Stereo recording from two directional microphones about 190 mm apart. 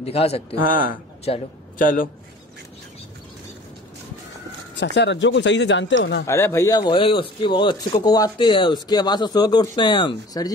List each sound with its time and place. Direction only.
0.0 s speech: 30° left (ahead or behind)
0.6 s speech: 45° left (ahead or behind)
4.7 s speech: 65° left (ahead or behind)
6.2 s speech: 15° left (ahead or behind)